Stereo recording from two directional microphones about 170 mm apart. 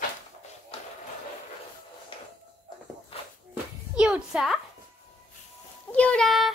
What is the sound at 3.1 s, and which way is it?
Walk, 35° left (ahead or behind).